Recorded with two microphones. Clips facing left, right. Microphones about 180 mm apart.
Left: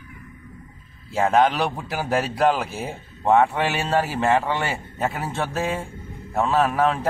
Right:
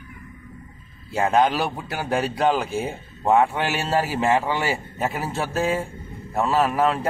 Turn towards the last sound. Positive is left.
turn(degrees=0)  # may be behind; listen again after turning